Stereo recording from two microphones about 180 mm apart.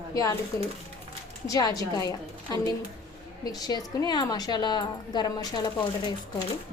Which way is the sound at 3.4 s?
20° left (ahead or behind).